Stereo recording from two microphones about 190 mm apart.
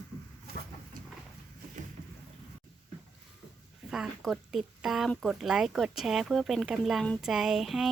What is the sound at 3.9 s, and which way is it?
Speech, centre (ahead or behind).